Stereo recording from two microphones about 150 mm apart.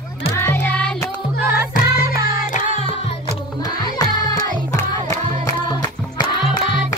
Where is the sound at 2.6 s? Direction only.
35° right (ahead or behind).